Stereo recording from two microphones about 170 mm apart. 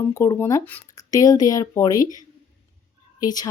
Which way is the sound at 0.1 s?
15° left (ahead or behind).